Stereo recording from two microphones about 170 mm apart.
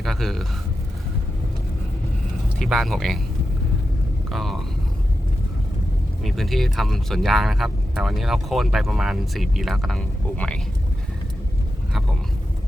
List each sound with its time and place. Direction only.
0.0 s speech: centre (ahead or behind)
2.6 s speech: centre (ahead or behind)
4.3 s speech: centre (ahead or behind)
6.2 s speech: centre (ahead or behind)